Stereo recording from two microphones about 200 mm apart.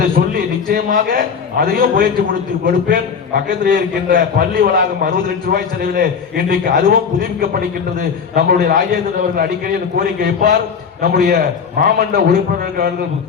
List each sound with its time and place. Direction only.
0.2 s a man's voice: 45° right (ahead or behind)
10.0 s a man's voice: 50° right (ahead or behind)